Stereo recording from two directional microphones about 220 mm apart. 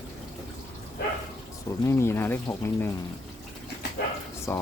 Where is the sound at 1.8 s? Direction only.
10° left (ahead or behind).